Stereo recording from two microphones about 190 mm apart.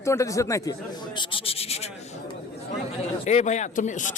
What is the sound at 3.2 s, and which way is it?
Speech, 35° left (ahead or behind).